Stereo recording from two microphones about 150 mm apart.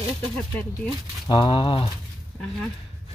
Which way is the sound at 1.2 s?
35° left (ahead or behind).